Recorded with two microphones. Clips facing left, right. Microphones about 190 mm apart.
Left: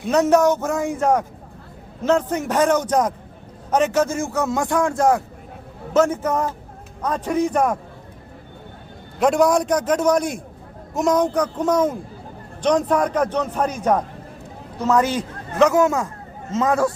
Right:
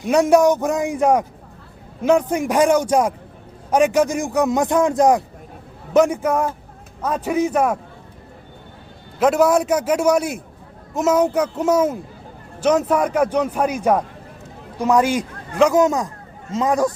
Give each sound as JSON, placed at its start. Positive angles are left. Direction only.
{"t": 0.1, "sound": "a man's voice", "side_deg": -10}
{"t": 9.1, "sound": "a man's voice", "side_deg": -5}